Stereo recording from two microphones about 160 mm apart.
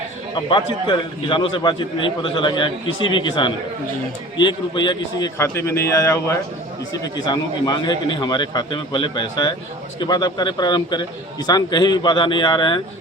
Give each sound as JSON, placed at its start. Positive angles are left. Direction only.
{"t": 0.3, "sound": "a man's voice", "side_deg": 30}
{"t": 5.4, "sound": "a man's voice", "side_deg": 15}